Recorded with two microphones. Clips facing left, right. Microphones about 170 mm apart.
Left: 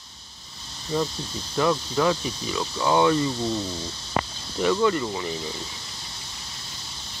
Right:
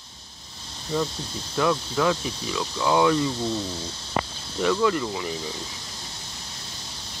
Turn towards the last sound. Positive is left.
turn(degrees=-5)  # may be behind; listen again after turning